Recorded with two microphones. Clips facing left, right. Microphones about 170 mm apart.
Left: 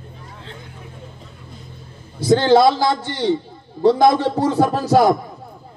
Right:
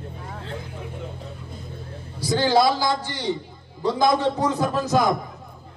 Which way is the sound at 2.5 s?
25° left (ahead or behind).